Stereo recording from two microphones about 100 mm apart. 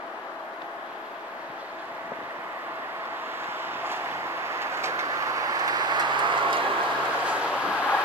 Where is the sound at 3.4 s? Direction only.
20° right (ahead or behind); by 6.6 s 55° right (ahead or behind).